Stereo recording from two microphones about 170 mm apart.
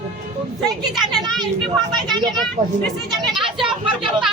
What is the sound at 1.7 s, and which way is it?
Speech, 25° right (ahead or behind).